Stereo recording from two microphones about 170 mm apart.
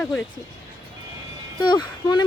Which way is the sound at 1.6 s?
25° left (ahead or behind).